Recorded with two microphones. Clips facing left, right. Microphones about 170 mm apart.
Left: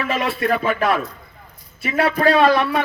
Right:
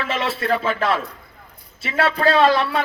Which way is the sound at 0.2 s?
15° left (ahead or behind).